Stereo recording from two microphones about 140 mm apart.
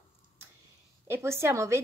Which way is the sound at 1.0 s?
20° right (ahead or behind).